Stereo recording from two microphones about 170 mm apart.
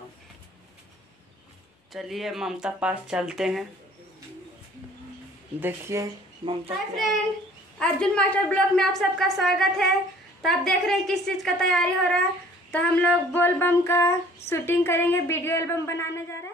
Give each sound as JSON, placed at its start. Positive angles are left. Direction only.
{"t": 1.9, "sound": "a woman's voice", "side_deg": 0}
{"t": 5.6, "sound": "speech", "side_deg": -15}
{"t": 6.4, "sound": "a child's voice", "side_deg": -35}
{"t": 7.8, "sound": "a woman's voice", "side_deg": 5}
{"t": 12.7, "sound": "a sound", "side_deg": 10}